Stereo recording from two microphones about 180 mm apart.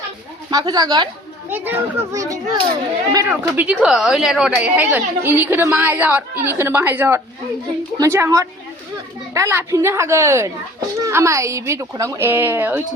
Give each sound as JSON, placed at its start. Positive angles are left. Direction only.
{"t": 0.5, "sound": "speech", "side_deg": -20}
{"t": 1.5, "sound": "a woman's voice", "side_deg": -10}